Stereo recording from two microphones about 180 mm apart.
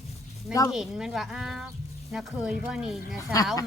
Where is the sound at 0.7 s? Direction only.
Centre (ahead or behind).